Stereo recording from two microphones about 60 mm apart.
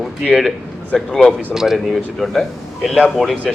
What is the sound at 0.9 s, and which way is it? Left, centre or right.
Speech, centre.